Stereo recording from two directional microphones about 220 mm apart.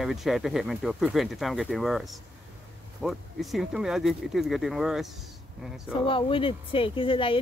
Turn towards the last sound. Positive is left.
turn(degrees=25)  # may be behind; listen again after turning